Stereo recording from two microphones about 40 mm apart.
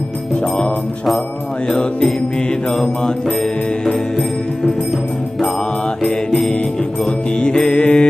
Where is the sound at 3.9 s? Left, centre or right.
Centre.